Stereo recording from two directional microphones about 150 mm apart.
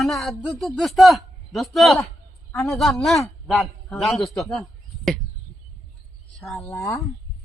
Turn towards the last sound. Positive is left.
turn(degrees=20)  # may be behind; listen again after turning